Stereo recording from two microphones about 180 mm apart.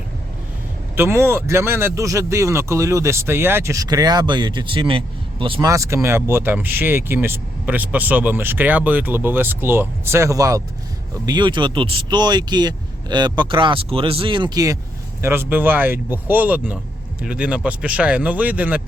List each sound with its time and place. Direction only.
0.9 s speech: 15° right (ahead or behind); by 5.5 s 30° right (ahead or behind)
5.5 s speech: 15° right (ahead or behind)